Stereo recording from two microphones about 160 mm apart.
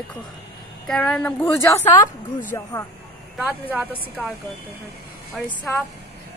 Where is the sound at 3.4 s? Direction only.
10° right (ahead or behind).